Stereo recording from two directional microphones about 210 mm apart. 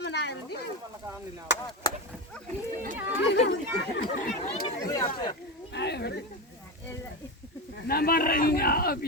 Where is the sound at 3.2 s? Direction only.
55° left (ahead or behind).